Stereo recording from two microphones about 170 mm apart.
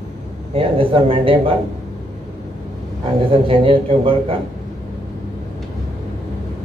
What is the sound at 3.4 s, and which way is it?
Speech, 30° right (ahead or behind).